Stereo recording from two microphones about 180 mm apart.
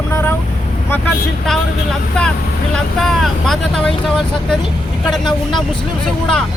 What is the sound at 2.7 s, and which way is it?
Speech, centre (ahead or behind).